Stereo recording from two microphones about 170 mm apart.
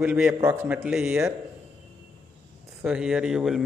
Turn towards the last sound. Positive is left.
turn(degrees=-5)  # may be behind; listen again after turning